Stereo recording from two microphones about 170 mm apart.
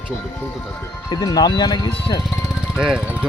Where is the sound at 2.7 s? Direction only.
5° right (ahead or behind).